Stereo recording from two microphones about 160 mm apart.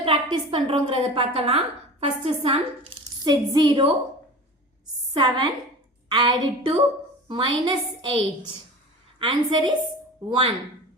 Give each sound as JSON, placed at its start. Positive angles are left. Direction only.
{"t": 0.0, "sound": "a woman's voice", "side_deg": -35}
{"t": 3.2, "sound": "a woman's voice", "side_deg": -25}
{"t": 5.1, "sound": "a woman's voice", "side_deg": -30}